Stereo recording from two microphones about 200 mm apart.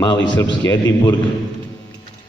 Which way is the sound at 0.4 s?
15° left (ahead or behind).